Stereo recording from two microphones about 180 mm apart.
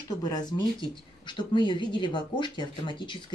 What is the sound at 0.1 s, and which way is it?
Speech, 20° left (ahead or behind).